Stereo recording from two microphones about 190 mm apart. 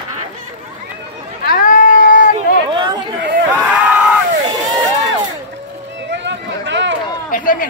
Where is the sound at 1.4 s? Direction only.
45° left (ahead or behind).